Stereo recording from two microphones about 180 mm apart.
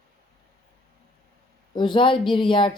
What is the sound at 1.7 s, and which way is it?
Speech, 25° left (ahead or behind).